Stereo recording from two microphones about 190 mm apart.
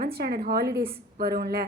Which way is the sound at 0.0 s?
55° right (ahead or behind).